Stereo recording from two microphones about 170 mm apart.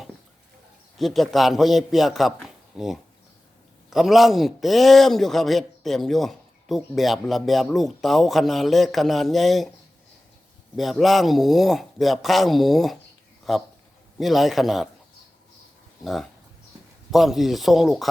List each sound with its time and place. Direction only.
0.9 s a man's voice: centre (ahead or behind)
10.8 s a man's voice: centre (ahead or behind)
17.1 s a man's voice: centre (ahead or behind)